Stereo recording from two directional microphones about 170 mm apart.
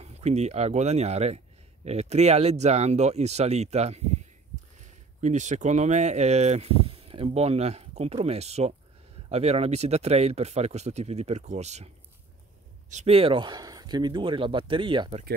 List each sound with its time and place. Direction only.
0.0 s speech: 40° right (ahead or behind)
12.9 s speech: 35° right (ahead or behind)